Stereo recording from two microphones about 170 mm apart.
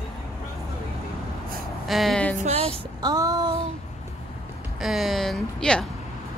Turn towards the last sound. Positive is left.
turn(degrees=5)  # may be behind; listen again after turning